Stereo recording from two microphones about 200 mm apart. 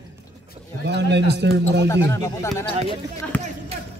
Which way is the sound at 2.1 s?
15° left (ahead or behind).